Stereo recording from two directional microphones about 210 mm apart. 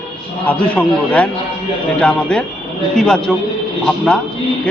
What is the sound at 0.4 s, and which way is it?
A man's voice, 5° left (ahead or behind).